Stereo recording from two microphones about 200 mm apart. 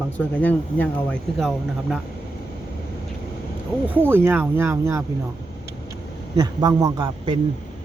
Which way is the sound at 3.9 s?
10° right (ahead or behind).